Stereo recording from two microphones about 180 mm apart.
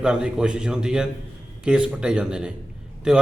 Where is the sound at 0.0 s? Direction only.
5° right (ahead or behind).